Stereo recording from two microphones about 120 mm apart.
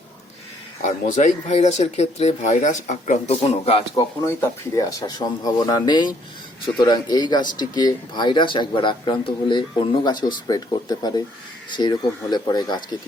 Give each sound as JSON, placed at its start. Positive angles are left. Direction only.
{"t": 0.8, "sound": "speech", "side_deg": 90}
{"t": 4.4, "sound": "a man's voice", "side_deg": 25}